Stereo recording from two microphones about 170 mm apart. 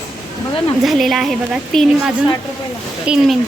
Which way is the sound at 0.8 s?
Centre (ahead or behind).